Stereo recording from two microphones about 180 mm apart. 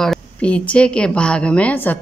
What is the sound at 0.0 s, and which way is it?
Speech, 5° left (ahead or behind).